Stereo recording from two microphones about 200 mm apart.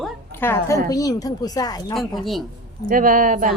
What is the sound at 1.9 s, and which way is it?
Speech, centre (ahead or behind).